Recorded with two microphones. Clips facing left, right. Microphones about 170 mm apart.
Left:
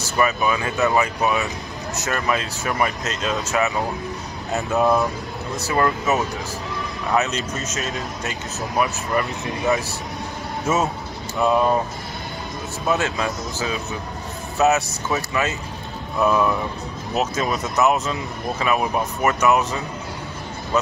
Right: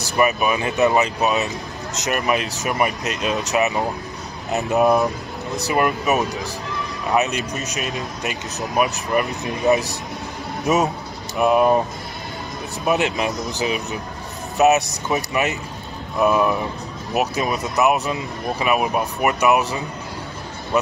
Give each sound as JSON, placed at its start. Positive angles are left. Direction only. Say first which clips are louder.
{"t": 0.2, "sound": "a man's voice", "louder": "right 2 dB", "side_deg": -20}
{"t": 12.8, "sound": "a man's voice", "louder": "right 2 dB", "side_deg": -15}